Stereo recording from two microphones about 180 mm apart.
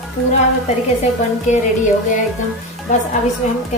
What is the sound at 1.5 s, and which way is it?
Speech, 40° left (ahead or behind).